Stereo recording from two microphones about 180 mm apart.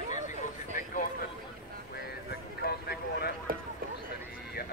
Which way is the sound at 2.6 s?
60° left (ahead or behind).